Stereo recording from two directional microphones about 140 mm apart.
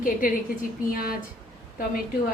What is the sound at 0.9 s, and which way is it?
Speech, 90° left.